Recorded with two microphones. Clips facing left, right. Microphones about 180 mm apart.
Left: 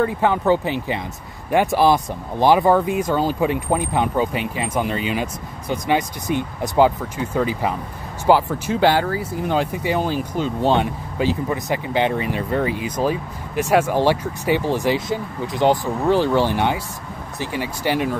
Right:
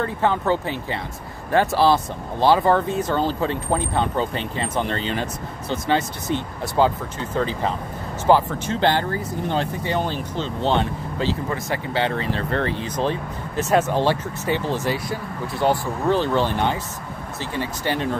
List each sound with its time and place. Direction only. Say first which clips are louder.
0.0 s speech: left 3 dB; 15° left (ahead or behind)